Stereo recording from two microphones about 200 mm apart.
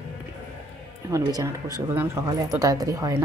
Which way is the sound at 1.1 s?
15° right (ahead or behind).